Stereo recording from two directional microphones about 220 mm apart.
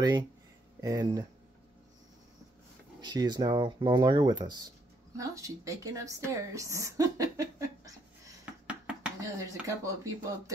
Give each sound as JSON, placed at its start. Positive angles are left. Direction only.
{"t": 0.0, "sound": "speech", "side_deg": -20}
{"t": 3.0, "sound": "speech", "side_deg": -20}